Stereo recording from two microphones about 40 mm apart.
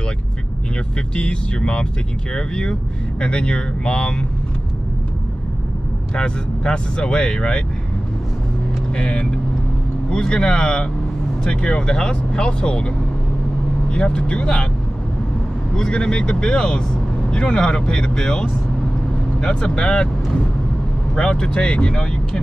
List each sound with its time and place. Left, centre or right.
1.1 s speech: left
6.1 s speech: left
8.9 s speech: left
15.7 s speech: centre
21.1 s speech: left